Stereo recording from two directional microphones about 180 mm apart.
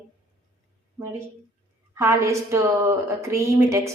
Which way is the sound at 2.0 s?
15° right (ahead or behind).